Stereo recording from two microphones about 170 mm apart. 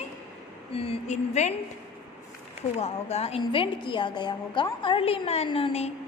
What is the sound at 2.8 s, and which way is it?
A woman's voice, 35° left (ahead or behind).